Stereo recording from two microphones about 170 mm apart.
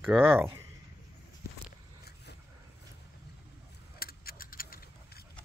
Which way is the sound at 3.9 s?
65° left (ahead or behind).